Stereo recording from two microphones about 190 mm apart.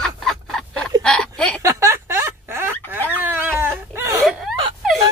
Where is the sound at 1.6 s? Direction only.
15° right (ahead or behind).